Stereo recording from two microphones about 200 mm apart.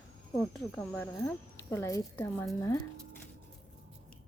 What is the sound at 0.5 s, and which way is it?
Speech, 10° left (ahead or behind).